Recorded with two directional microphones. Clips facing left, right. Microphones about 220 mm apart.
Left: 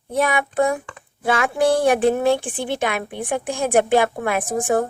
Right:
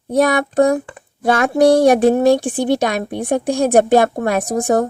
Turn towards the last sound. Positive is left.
turn(degrees=-40)  # may be behind; listen again after turning